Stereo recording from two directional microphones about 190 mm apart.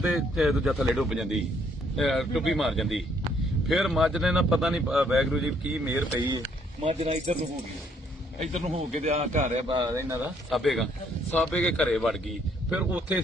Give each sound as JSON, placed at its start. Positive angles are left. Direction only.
{"t": 0.0, "sound": "speech", "side_deg": -5}
{"t": 6.1, "sound": "speech", "side_deg": -20}
{"t": 8.4, "sound": "a man's voice", "side_deg": -35}
{"t": 9.7, "sound": "speech", "side_deg": -20}
{"t": 10.5, "sound": "speech", "side_deg": 0}